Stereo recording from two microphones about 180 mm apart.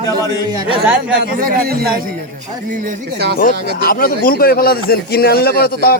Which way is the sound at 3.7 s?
55° left (ahead or behind).